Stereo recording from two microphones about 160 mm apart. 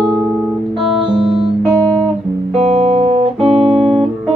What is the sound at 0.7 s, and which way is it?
Music, centre (ahead or behind).